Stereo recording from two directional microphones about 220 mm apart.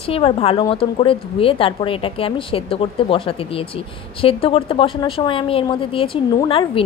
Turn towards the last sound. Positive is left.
turn(degrees=25)  # may be behind; listen again after turning